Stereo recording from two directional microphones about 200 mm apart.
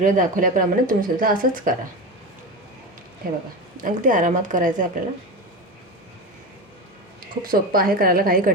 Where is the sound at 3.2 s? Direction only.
45° right (ahead or behind).